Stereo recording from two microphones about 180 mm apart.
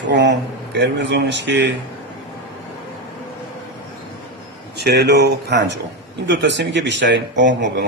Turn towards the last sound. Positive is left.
turn(degrees=-80)